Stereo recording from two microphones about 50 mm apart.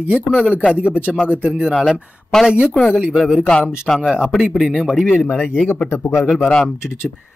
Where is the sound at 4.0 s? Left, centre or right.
Centre.